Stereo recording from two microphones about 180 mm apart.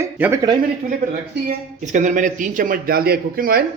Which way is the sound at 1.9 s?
45° right (ahead or behind).